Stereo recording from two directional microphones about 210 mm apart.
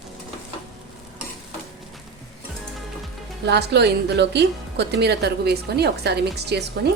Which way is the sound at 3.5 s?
55° right (ahead or behind).